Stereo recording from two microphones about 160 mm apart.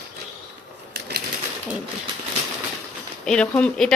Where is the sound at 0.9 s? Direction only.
85° right.